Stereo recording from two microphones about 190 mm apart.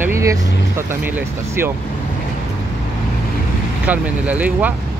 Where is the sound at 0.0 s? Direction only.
15° right (ahead or behind).